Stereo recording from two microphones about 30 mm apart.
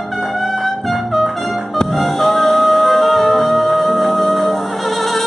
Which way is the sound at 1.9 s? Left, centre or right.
Centre.